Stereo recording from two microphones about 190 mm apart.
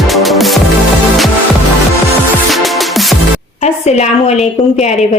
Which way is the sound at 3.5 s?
35° left (ahead or behind).